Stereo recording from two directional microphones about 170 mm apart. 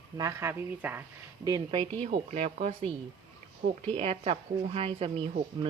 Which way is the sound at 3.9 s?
35° right (ahead or behind).